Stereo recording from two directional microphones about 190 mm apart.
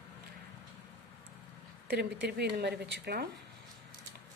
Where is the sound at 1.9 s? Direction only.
60° right (ahead or behind).